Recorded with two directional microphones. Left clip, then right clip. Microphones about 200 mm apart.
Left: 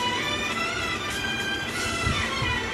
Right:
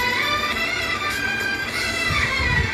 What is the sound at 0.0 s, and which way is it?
Music, 15° right (ahead or behind).